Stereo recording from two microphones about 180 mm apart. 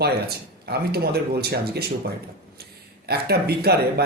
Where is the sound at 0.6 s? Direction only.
60° right (ahead or behind).